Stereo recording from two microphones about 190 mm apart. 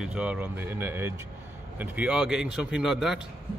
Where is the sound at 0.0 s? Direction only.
5° right (ahead or behind).